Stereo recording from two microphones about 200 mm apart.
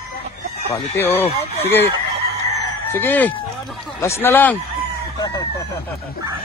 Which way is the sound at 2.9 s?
10° left (ahead or behind).